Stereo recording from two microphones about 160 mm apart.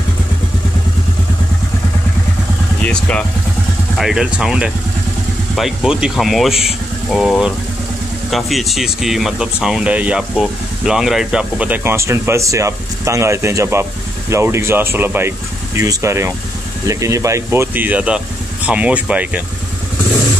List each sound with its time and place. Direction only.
2.8 s speech: 5° left (ahead or behind); by 19.4 s 10° right (ahead or behind)